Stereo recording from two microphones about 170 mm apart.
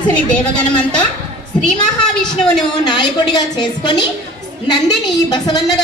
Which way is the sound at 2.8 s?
25° left (ahead or behind).